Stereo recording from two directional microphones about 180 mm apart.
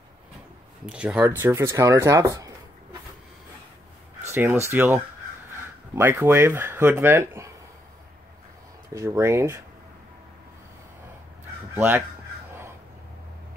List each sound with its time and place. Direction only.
0.8 s speech: 5° right (ahead or behind)
4.3 s speech: 15° right (ahead or behind)
8.9 s speech: 15° right (ahead or behind)
11.7 s speech: 10° right (ahead or behind)